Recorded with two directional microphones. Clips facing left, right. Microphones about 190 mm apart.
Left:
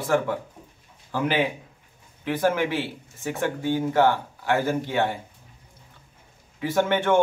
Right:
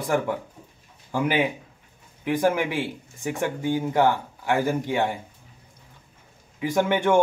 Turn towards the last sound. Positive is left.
turn(degrees=-15)  # may be behind; listen again after turning